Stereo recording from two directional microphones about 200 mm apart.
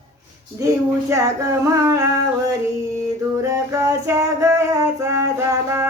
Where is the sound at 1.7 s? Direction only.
15° right (ahead or behind).